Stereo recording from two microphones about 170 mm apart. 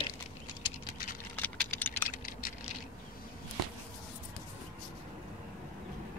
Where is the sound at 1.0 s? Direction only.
55° left (ahead or behind).